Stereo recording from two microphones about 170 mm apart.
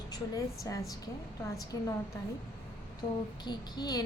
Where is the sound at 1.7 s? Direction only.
20° left (ahead or behind).